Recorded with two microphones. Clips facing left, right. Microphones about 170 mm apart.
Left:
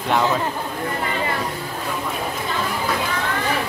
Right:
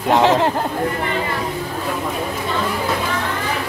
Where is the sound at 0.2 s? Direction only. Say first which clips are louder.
Right 6 dB; 75° right (ahead or behind).